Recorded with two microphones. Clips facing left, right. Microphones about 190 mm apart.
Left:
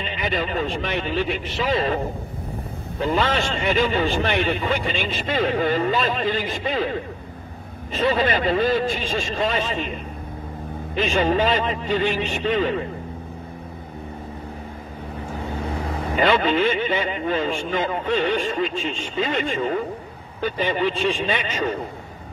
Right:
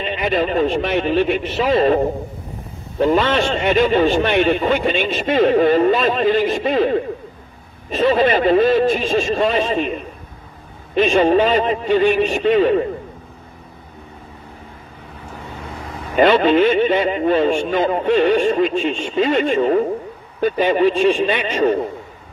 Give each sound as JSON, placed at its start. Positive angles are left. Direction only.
{"t": 0.3, "sound": "speech", "side_deg": -40}
{"t": 11.1, "sound": "speech", "side_deg": -30}
{"t": 16.2, "sound": "speech", "side_deg": -40}